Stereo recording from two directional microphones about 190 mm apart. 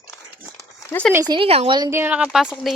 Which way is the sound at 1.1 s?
15° right (ahead or behind).